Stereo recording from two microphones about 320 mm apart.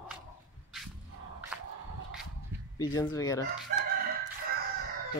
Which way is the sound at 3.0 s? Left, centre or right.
Centre.